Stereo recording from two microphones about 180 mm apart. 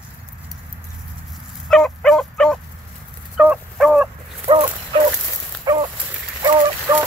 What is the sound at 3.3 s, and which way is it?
Fowl, 5° right (ahead or behind).